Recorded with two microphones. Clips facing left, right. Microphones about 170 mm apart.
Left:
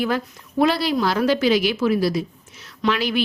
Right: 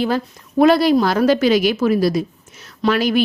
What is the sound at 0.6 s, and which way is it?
A woman's voice, 50° right (ahead or behind).